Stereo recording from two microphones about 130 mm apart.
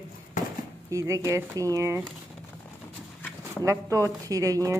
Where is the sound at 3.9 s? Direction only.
25° right (ahead or behind).